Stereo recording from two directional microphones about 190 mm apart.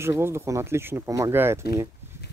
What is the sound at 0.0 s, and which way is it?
Speech, 15° right (ahead or behind).